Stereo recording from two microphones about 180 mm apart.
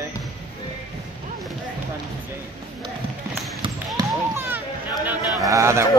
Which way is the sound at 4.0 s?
15° right (ahead or behind).